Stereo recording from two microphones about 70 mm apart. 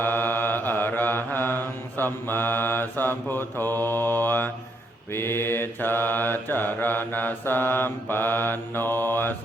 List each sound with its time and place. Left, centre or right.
0.0 s mantra: left